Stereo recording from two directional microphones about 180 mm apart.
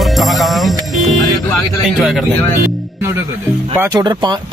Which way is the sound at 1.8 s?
Centre (ahead or behind).